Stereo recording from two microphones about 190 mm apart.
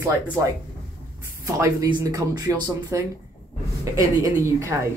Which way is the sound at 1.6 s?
20° right (ahead or behind).